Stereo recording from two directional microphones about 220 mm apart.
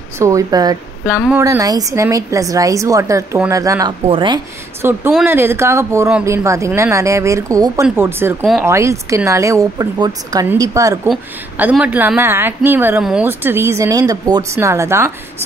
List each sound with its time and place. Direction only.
0.2 s a woman's voice: 15° right (ahead or behind)
1.0 s a woman's voice: 5° right (ahead or behind); by 4.4 s 20° right (ahead or behind)
5.1 s a woman's voice: 10° right (ahead or behind)
11.1 s a woman's voice: 5° right (ahead or behind)